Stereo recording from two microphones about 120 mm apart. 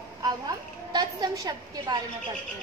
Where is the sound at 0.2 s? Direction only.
35° right (ahead or behind).